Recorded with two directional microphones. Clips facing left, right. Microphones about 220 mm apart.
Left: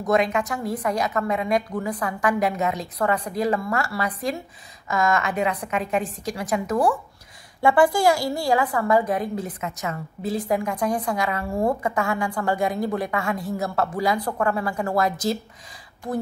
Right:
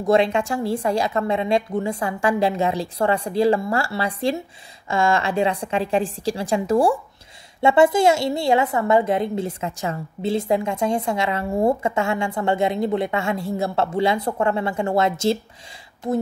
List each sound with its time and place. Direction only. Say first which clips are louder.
0.0 s a woman's voice: right 3 dB; 30° right (ahead or behind)